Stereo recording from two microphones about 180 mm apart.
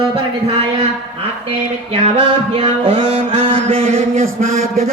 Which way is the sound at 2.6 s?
30° right (ahead or behind).